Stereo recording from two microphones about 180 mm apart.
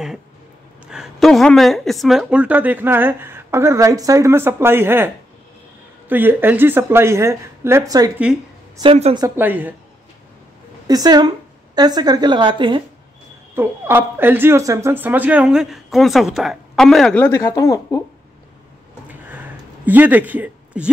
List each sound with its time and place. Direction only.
0.8 s speech: 5° right (ahead or behind); by 8.1 s 20° right (ahead or behind)
8.7 s a woman's voice: 30° right (ahead or behind)
9.4 s speech: 10° right (ahead or behind)
10.9 s a woman's voice: 20° right (ahead or behind)
13.6 s speech: 10° right (ahead or behind); by 18.0 s 20° left (ahead or behind)
19.0 s a sound: 10° right (ahead or behind)